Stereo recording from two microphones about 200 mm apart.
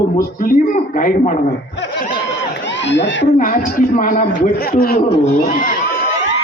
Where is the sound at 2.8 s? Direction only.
65° left (ahead or behind).